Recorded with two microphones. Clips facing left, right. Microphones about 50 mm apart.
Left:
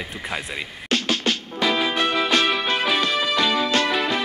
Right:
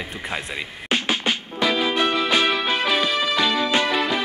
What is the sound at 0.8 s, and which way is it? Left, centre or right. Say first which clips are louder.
Music: even; centre.